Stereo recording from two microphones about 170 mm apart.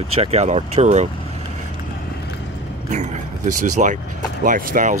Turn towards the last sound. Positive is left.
turn(degrees=-50)  # may be behind; listen again after turning